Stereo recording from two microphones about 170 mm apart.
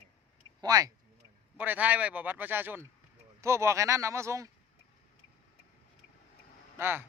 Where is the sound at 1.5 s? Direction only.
10° right (ahead or behind).